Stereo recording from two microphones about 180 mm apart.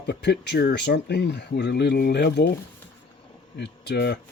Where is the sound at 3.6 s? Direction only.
65° left (ahead or behind).